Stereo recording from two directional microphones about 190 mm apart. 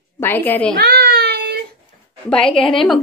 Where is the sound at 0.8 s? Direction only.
55° right (ahead or behind).